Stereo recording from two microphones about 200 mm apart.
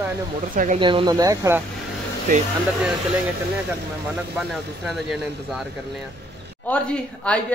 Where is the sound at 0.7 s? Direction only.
25° right (ahead or behind).